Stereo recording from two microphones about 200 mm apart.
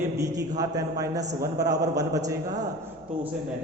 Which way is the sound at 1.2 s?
35° right (ahead or behind).